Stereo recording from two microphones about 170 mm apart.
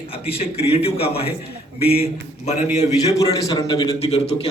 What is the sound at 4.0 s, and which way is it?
Speech, 35° left (ahead or behind).